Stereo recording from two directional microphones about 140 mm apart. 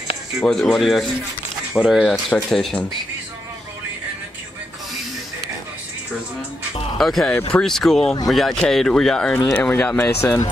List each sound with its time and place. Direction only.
0.4 s speech: centre (ahead or behind)
7.0 s speech: centre (ahead or behind); by 10.5 s 20° left (ahead or behind)